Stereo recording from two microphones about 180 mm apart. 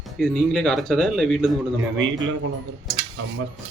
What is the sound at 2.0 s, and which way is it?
Speech, 90° right.